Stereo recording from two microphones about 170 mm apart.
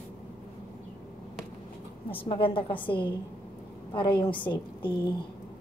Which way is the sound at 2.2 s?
30° left (ahead or behind).